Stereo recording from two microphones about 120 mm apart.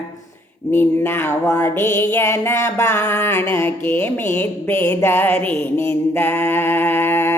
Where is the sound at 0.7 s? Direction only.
20° left (ahead or behind).